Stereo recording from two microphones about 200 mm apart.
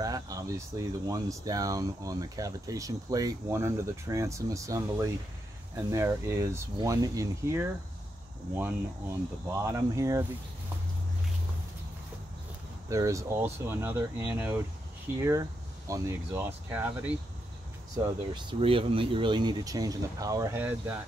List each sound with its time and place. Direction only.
0.0 s speech: 15° right (ahead or behind)
9.5 s speech: 15° right (ahead or behind)
12.9 s speech: 15° right (ahead or behind)
18.3 s speech: 25° right (ahead or behind); by 20.9 s 10° right (ahead or behind)